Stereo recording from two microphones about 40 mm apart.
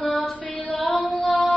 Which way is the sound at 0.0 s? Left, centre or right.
Left.